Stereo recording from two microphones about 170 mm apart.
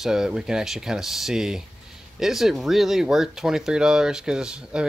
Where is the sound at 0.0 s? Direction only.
5° right (ahead or behind).